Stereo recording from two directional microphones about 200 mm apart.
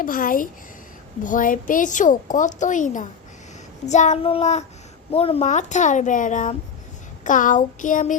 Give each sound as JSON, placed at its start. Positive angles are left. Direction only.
{"t": 0.0, "sound": "a woman's voice", "side_deg": 45}